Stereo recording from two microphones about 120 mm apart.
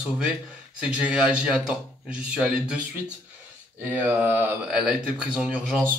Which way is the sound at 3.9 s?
15° right (ahead or behind).